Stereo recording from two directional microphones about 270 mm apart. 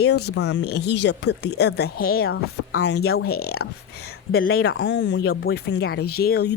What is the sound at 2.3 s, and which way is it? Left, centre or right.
A woman's voice, left.